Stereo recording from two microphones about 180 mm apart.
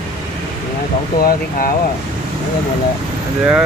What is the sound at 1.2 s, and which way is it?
Speech, 55° left (ahead or behind).